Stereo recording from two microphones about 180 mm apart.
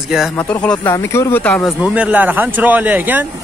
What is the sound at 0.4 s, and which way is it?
Speech, 10° left (ahead or behind).